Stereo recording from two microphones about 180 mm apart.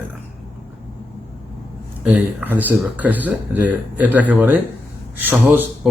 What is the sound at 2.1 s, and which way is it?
Speech, 10° right (ahead or behind).